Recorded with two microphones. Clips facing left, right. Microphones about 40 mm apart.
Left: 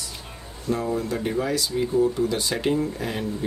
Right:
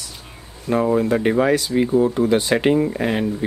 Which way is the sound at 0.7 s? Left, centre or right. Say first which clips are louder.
Right 8 dB; right.